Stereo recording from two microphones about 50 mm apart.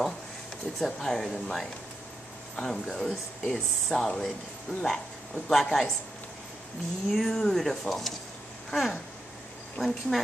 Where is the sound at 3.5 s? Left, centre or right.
Centre.